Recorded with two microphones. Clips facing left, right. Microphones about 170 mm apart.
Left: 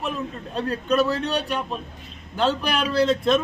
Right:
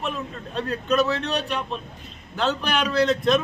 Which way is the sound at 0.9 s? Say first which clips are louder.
Left 1 dB; 35° left (ahead or behind).